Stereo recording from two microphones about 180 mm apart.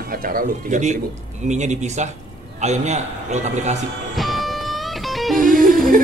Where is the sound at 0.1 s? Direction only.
55° right (ahead or behind).